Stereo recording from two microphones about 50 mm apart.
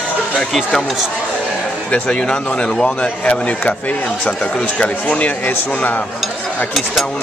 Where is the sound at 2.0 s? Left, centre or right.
Centre.